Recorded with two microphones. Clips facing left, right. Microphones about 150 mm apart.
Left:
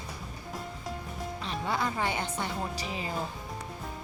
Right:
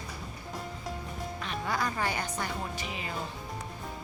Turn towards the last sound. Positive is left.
turn(degrees=35)  # may be behind; listen again after turning